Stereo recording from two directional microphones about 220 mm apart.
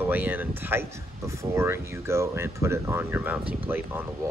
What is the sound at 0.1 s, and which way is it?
Speech, 10° right (ahead or behind).